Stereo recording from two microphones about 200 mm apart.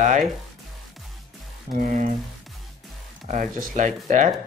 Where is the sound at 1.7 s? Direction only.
40° right (ahead or behind).